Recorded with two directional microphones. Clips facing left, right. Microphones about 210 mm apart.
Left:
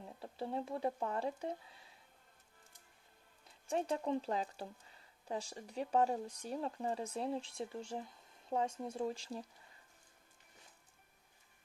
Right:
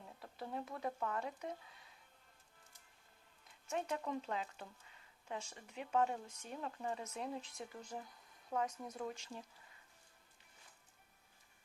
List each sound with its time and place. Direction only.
0.2 s speech: 30° left (ahead or behind)
3.7 s speech: 30° left (ahead or behind)